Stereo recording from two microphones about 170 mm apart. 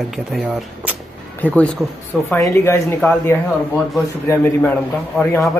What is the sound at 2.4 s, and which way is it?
A man's voice, 15° left (ahead or behind).